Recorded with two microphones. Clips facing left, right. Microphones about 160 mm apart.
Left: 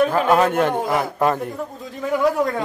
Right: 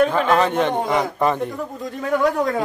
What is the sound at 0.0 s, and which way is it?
A man's voice, 5° left (ahead or behind).